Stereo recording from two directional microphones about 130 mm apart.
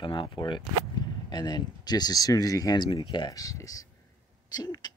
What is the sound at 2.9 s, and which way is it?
Speech, 40° left (ahead or behind).